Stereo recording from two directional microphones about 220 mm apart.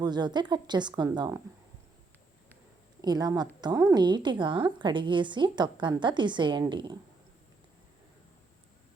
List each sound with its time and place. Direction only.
0.0 s a woman's voice: 20° right (ahead or behind)
3.0 s a woman's voice: 20° right (ahead or behind)